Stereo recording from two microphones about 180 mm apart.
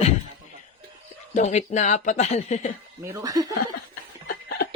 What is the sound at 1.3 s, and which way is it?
Speech, 40° left (ahead or behind).